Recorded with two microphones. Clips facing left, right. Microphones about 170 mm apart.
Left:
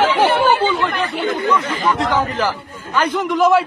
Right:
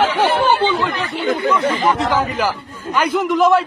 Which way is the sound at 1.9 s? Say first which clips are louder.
Even; centre (ahead or behind).